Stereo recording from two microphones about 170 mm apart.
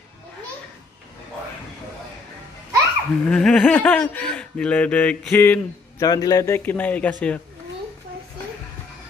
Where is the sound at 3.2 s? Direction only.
5° left (ahead or behind).